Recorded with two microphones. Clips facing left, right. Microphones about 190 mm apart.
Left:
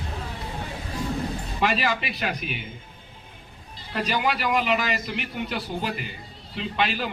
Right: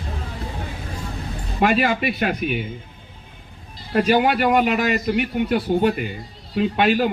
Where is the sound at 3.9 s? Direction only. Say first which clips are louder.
Right 9 dB; 50° right (ahead or behind).